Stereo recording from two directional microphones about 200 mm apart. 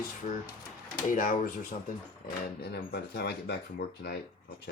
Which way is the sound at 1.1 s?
40° left (ahead or behind).